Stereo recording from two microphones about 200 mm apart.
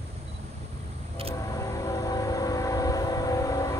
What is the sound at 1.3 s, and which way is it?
Train, 15° left (ahead or behind).